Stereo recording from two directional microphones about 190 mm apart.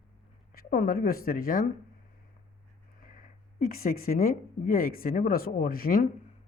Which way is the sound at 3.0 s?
45° left (ahead or behind).